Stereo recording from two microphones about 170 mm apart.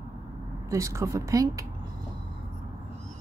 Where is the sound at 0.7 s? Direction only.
20° right (ahead or behind).